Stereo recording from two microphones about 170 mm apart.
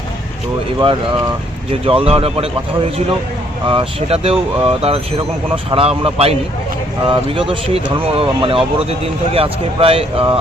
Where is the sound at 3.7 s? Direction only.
35° right (ahead or behind).